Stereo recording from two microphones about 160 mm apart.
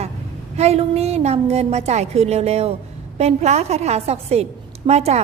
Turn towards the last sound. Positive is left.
turn(degrees=-40)  # may be behind; listen again after turning